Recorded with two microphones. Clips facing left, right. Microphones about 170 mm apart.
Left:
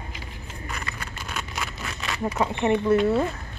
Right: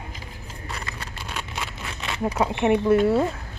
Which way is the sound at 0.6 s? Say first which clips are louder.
Even; 30° right (ahead or behind).